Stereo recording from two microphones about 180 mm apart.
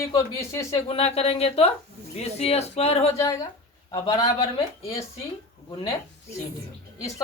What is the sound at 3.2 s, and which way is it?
Speech, 20° left (ahead or behind).